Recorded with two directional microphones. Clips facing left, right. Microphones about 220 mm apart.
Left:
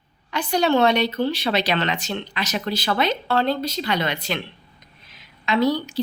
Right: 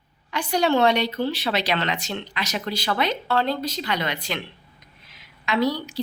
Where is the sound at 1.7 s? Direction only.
20° left (ahead or behind).